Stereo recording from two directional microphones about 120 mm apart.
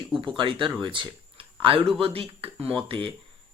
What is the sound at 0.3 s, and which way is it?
Speech, 45° right (ahead or behind).